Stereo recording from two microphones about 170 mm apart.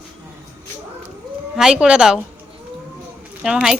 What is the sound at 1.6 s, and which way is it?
Speech, 5° right (ahead or behind).